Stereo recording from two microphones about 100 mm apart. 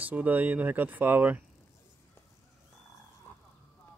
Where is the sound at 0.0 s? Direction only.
15° right (ahead or behind).